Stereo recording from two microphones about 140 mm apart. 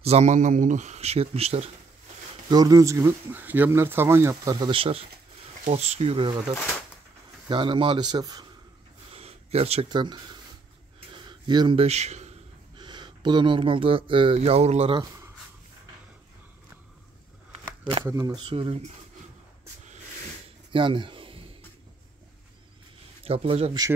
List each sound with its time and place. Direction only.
0.0 s a man's voice: 50° right (ahead or behind)
2.5 s speech: 25° right (ahead or behind)
4.6 s speech: 40° right (ahead or behind)
5.7 s a man's voice: 50° right (ahead or behind)
7.4 s speech: 35° right (ahead or behind)
9.1 s a sound: 45° right (ahead or behind)
9.8 s speech: 30° right (ahead or behind)
11.1 s a sound: 35° right (ahead or behind)
11.8 s speech: 50° right (ahead or behind)
12.7 s speech: 35° right (ahead or behind); by 15.0 s 50° right (ahead or behind)
18.0 s speech: 25° right (ahead or behind)
18.4 s speech: 40° right (ahead or behind)
20.7 s speech: 35° right (ahead or behind)
23.2 s a man's voice: 45° right (ahead or behind)